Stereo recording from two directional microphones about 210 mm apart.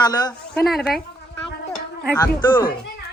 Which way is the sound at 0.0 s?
20° left (ahead or behind).